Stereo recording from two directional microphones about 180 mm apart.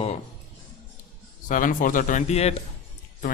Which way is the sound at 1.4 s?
45° left (ahead or behind).